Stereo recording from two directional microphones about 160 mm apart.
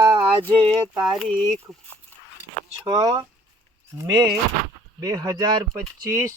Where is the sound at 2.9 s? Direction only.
25° right (ahead or behind).